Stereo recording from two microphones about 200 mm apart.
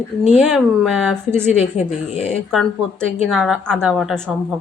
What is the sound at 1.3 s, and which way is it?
Speech, 10° right (ahead or behind).